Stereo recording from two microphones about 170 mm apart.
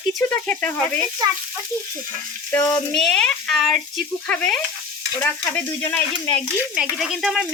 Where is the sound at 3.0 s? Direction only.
5° left (ahead or behind).